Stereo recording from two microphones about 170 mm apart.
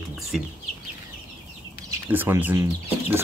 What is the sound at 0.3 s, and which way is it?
Speech, 5° right (ahead or behind).